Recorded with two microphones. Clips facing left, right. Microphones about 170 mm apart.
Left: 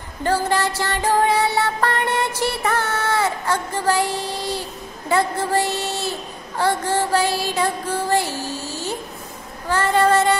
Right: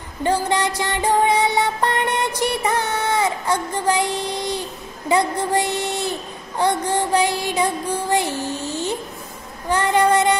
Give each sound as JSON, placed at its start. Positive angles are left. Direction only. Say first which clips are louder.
{"t": 0.2, "sound": "music", "louder": "even", "side_deg": -20}
{"t": 6.6, "sound": "child singing", "louder": "even", "side_deg": -15}